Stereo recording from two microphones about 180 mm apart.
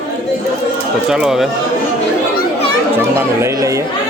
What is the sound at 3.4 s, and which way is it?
Speech, 15° right (ahead or behind).